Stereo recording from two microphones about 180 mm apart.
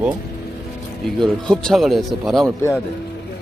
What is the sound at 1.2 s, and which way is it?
Speech, 5° left (ahead or behind).